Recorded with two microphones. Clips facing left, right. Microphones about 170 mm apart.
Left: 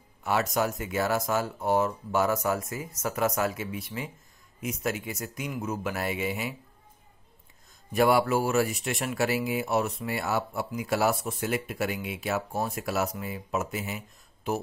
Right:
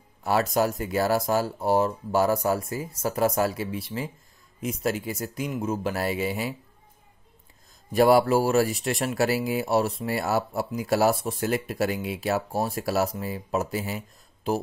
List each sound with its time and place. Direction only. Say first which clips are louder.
0.2 s speech: right 4 dB; 35° right (ahead or behind)
7.9 s speech: right 4 dB; 35° right (ahead or behind)